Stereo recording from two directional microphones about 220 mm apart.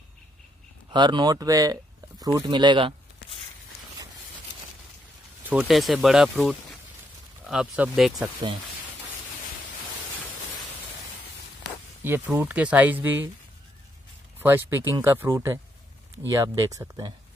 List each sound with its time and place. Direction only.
0.9 s speech: 20° right (ahead or behind)
5.4 s speech: 5° right (ahead or behind)
12.0 s speech: 10° right (ahead or behind)
14.4 s speech: 10° right (ahead or behind)